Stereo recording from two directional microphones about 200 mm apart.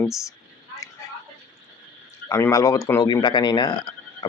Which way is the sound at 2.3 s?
15° left (ahead or behind).